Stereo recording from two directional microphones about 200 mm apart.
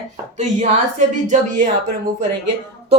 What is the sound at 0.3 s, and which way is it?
A man's voice, 35° right (ahead or behind).